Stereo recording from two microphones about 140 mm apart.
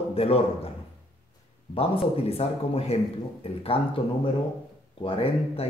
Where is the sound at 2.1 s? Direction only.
45° left (ahead or behind).